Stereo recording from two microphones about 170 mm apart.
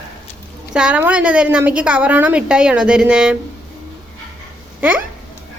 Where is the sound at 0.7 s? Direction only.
5° right (ahead or behind).